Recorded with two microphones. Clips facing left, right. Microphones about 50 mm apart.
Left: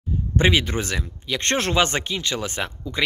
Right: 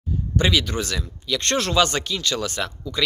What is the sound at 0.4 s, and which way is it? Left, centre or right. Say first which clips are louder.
Speech: left 2 dB; left.